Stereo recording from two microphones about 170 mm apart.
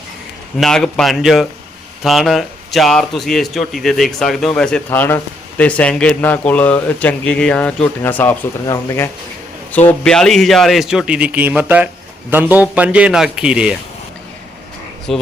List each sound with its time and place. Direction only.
0.6 s speech: 5° left (ahead or behind); by 9.0 s 20° left (ahead or behind)
10.0 s a man's voice: 5° left (ahead or behind)
15.1 s speech: centre (ahead or behind)